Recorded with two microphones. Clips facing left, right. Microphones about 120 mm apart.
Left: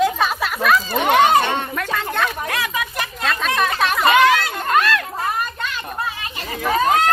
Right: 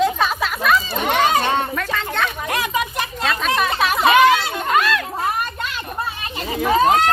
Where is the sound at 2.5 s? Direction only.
20° right (ahead or behind).